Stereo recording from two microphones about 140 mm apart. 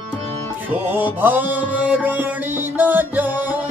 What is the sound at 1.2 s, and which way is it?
Mantra, 15° right (ahead or behind).